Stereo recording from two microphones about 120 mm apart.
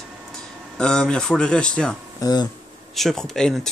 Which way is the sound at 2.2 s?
30° left (ahead or behind).